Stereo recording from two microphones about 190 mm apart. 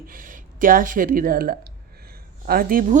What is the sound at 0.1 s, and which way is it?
Speech, 45° right (ahead or behind).